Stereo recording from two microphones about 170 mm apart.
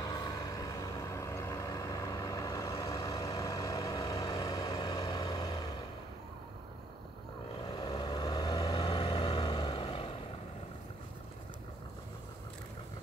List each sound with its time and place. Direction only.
0.0 s vehicle: 25° left (ahead or behind)
7.6 s vehicle: 30° left (ahead or behind)
8.7 s vehicle: 35° left (ahead or behind)
9.4 s vehicle: 25° left (ahead or behind)